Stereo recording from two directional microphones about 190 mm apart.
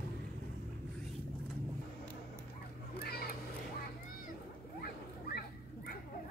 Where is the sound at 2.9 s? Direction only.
55° left (ahead or behind).